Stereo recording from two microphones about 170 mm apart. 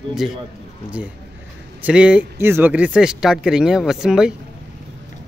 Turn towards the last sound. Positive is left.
turn(degrees=-5)  # may be behind; listen again after turning